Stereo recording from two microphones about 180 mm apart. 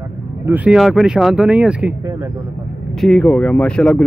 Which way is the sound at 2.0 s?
20° right (ahead or behind).